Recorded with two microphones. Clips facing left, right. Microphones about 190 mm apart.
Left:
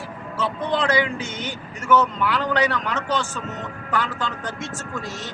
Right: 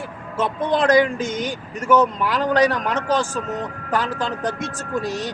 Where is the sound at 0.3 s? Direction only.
45° right (ahead or behind).